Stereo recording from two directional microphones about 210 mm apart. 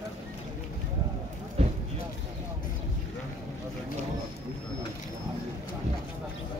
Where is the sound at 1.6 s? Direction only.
30° right (ahead or behind).